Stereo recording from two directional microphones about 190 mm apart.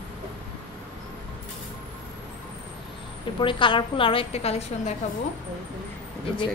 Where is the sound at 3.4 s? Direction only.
25° left (ahead or behind).